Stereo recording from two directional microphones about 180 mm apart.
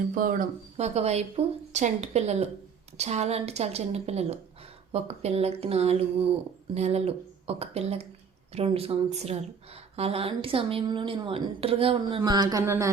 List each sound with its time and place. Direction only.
0.1 s speech: 50° right (ahead or behind)
0.9 s a woman's voice: 35° right (ahead or behind); by 12.9 s 15° right (ahead or behind)